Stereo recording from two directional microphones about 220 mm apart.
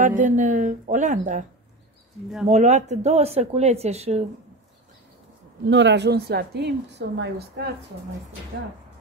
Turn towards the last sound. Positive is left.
turn(degrees=-50)  # may be behind; listen again after turning